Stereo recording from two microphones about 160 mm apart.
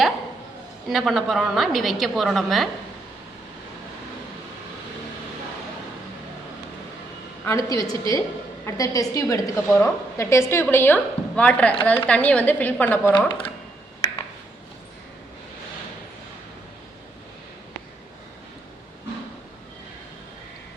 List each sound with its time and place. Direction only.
0.9 s a woman's voice: centre (ahead or behind)
7.4 s a woman's voice: 20° left (ahead or behind)